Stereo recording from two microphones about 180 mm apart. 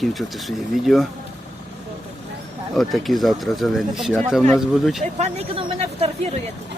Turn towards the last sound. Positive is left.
turn(degrees=-35)  # may be behind; listen again after turning